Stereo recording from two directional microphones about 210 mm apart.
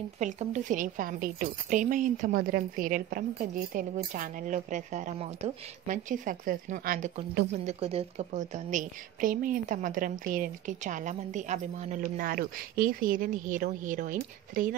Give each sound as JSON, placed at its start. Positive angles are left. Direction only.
{"t": 0.2, "sound": "a woman's voice", "side_deg": -35}
{"t": 12.0, "sound": "a woman's voice", "side_deg": -45}